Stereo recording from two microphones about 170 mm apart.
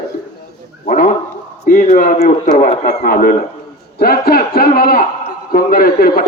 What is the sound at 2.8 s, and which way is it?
A man's voice, 60° left (ahead or behind).